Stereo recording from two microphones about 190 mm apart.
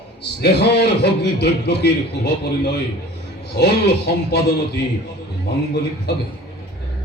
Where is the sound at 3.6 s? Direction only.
60° left (ahead or behind).